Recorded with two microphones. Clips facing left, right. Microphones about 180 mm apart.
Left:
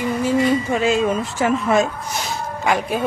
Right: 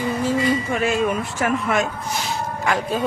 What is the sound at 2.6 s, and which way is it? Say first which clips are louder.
Speech: left 2 dB; 15° left (ahead or behind).